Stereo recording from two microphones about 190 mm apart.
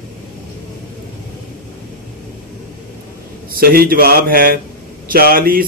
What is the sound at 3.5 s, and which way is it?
Speech, 50° right (ahead or behind).